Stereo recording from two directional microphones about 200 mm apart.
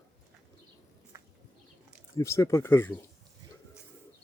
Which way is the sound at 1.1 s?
15° right (ahead or behind).